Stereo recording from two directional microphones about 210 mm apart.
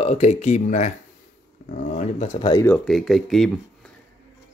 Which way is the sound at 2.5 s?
15° left (ahead or behind).